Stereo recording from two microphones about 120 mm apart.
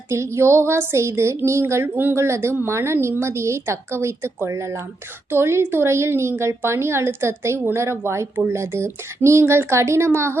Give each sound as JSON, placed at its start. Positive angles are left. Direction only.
{"t": 0.1, "sound": "a woman's voice", "side_deg": -20}